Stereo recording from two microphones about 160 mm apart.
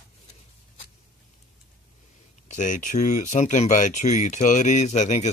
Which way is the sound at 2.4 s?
50° left (ahead or behind).